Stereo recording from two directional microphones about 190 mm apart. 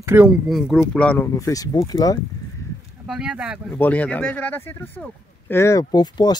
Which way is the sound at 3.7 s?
10° left (ahead or behind).